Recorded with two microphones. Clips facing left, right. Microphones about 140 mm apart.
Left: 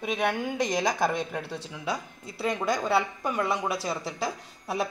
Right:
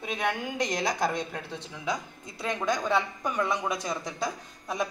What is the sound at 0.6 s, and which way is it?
A woman's voice, 10° left (ahead or behind).